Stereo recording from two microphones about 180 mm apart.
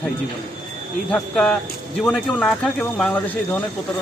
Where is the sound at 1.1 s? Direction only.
5° left (ahead or behind).